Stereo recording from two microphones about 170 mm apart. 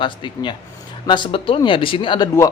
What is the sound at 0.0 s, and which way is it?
A man's voice, 30° left (ahead or behind).